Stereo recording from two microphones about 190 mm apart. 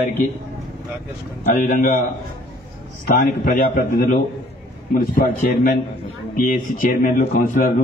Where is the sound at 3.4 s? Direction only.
45° left (ahead or behind).